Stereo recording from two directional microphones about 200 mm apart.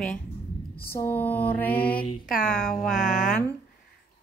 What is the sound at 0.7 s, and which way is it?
Mantra, 10° left (ahead or behind).